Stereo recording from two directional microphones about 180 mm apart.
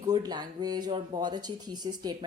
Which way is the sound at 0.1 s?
20° right (ahead or behind).